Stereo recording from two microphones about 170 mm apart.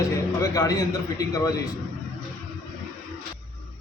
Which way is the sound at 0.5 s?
20° left (ahead or behind).